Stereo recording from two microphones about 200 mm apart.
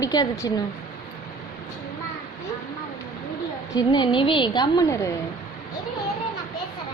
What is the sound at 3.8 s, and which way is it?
A woman's voice, 25° left (ahead or behind).